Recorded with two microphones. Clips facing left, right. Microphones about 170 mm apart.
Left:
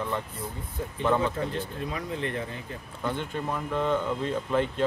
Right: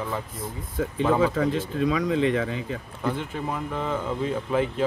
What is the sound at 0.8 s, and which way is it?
Speech, 90° right.